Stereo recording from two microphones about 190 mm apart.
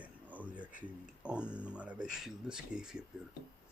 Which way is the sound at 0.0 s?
10° right (ahead or behind).